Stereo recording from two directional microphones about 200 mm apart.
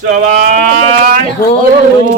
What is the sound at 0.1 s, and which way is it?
Speech, 40° right (ahead or behind).